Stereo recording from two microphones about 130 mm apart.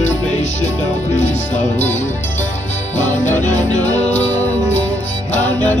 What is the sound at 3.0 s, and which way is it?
Music, 65° left (ahead or behind).